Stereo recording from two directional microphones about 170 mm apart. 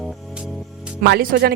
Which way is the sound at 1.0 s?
65° right (ahead or behind).